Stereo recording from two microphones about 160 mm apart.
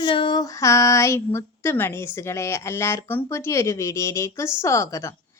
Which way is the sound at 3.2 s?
15° left (ahead or behind).